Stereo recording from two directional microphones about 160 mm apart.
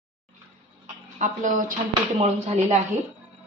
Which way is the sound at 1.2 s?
50° right (ahead or behind).